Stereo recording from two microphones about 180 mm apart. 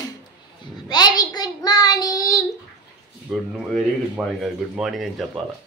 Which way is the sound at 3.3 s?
Centre (ahead or behind).